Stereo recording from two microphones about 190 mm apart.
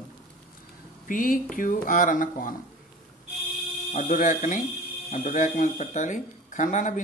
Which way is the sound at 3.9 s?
40° left (ahead or behind).